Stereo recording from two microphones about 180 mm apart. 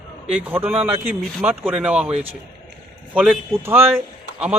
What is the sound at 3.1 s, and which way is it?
Speech, 10° right (ahead or behind).